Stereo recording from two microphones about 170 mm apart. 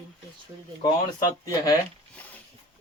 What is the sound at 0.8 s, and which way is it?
Speech, 20° left (ahead or behind).